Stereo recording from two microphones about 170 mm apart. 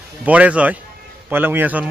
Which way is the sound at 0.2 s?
10° right (ahead or behind).